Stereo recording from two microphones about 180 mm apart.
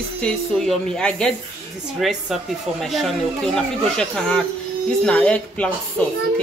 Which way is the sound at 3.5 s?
5° left (ahead or behind).